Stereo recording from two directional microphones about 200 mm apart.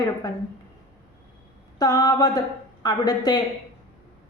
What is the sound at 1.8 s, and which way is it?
A woman's voice, 15° left (ahead or behind).